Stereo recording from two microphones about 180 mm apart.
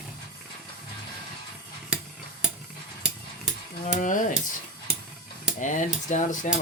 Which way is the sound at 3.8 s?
45° left (ahead or behind).